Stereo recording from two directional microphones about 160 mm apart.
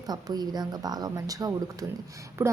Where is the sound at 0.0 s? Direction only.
25° right (ahead or behind).